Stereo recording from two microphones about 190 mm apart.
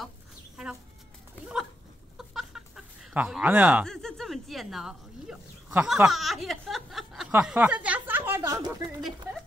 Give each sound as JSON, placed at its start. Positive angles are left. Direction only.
{"t": 2.1, "sound": "chicken", "side_deg": 0}
{"t": 3.8, "sound": "a sound", "side_deg": 0}
{"t": 5.9, "sound": "speech", "side_deg": 0}